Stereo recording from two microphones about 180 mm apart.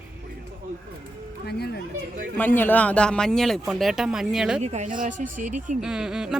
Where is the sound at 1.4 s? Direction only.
65° left (ahead or behind).